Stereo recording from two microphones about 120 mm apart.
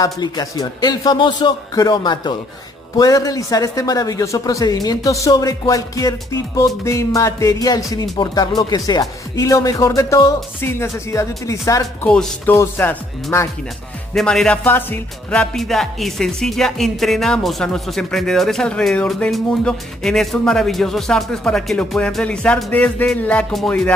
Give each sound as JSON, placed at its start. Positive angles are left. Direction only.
{"t": 0.0, "sound": "a man's voice", "side_deg": 30}
{"t": 12.0, "sound": "speech", "side_deg": 10}
{"t": 14.1, "sound": "music", "side_deg": 5}
{"t": 14.6, "sound": "speech", "side_deg": 15}
{"t": 15.5, "sound": "music", "side_deg": 0}
{"t": 23.0, "sound": "speech", "side_deg": 10}